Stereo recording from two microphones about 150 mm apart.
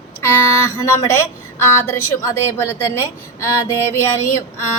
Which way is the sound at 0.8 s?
20° left (ahead or behind).